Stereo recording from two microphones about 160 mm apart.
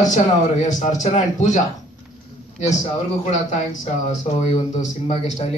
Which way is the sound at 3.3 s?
45° left (ahead or behind).